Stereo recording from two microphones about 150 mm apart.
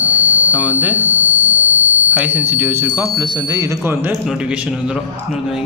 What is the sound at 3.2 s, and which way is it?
A man's voice, 25° right (ahead or behind).